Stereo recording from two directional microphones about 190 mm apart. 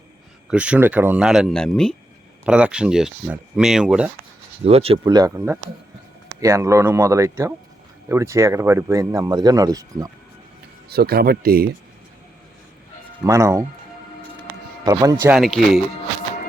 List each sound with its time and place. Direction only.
0.5 s speech: 5° right (ahead or behind)
4.6 s speech: 30° right (ahead or behind)
10.8 s speech: 55° right (ahead or behind)
13.2 s speech: 15° right (ahead or behind)
14.8 s speech: 15° right (ahead or behind)
15.4 s speech: centre (ahead or behind)